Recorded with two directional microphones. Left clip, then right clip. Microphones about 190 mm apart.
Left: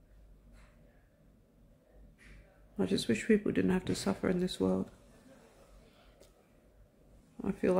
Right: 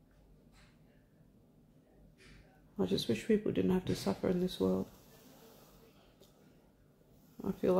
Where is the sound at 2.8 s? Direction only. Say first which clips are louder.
Left 2 dB; 15° left (ahead or behind).